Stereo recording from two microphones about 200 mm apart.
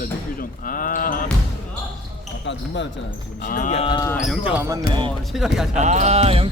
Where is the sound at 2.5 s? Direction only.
65° left (ahead or behind).